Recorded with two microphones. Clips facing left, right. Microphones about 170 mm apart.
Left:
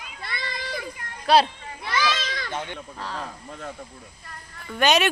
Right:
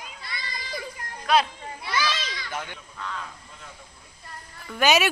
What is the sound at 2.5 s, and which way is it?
Speech, 25° left (ahead or behind).